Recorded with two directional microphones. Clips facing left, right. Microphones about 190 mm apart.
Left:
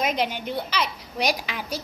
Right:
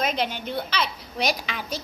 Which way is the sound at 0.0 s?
15° left (ahead or behind).